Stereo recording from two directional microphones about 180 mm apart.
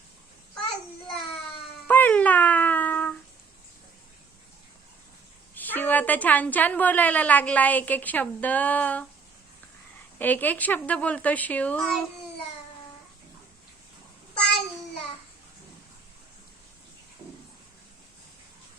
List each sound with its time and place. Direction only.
1.9 s a sound: 10° left (ahead or behind)
5.5 s a woman's voice: 10° left (ahead or behind)
10.2 s a woman's voice: 10° left (ahead or behind)